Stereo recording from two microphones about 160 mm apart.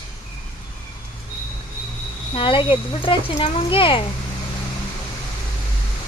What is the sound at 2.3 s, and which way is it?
Speech, 35° left (ahead or behind).